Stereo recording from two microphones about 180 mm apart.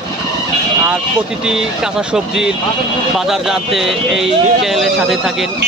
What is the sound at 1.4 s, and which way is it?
Speech, 5° right (ahead or behind).